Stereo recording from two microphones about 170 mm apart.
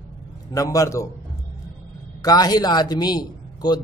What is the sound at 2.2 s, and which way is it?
A man's voice, 20° left (ahead or behind).